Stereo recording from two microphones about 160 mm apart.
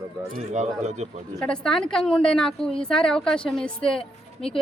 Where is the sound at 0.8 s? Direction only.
45° right (ahead or behind).